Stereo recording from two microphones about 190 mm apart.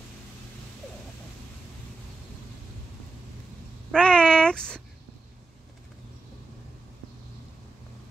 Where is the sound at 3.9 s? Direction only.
5° left (ahead or behind).